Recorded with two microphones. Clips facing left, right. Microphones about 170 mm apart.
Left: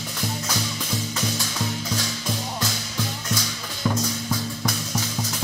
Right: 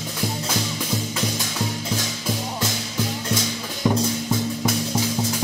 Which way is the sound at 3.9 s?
15° right (ahead or behind).